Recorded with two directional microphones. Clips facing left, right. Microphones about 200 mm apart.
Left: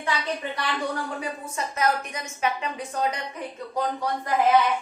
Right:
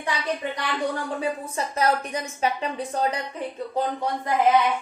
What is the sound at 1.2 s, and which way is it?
A woman's voice, 35° right (ahead or behind).